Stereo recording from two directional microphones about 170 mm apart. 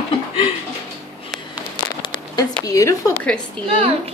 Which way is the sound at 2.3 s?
20° left (ahead or behind).